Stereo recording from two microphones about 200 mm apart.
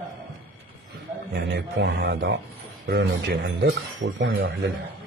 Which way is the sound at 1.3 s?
60° right (ahead or behind).